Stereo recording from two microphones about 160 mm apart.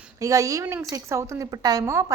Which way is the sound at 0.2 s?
20° right (ahead or behind).